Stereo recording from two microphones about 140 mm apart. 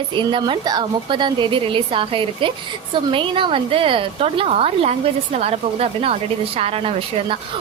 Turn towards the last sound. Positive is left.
turn(degrees=-40)  # may be behind; listen again after turning